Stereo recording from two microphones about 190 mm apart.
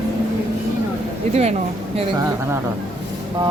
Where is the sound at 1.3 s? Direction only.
35° right (ahead or behind).